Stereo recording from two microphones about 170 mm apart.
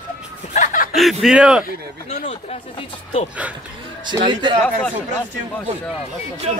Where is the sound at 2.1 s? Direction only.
40° left (ahead or behind).